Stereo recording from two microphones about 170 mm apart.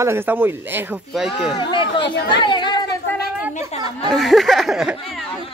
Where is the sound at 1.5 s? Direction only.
30° left (ahead or behind).